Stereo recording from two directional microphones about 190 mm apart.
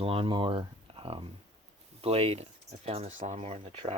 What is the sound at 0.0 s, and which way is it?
Speech, 30° right (ahead or behind).